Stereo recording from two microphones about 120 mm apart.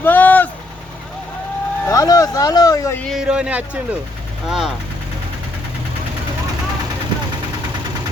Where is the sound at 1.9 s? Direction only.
30° left (ahead or behind).